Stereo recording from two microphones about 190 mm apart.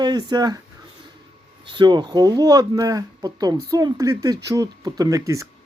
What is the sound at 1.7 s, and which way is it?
Speech, 25° right (ahead or behind).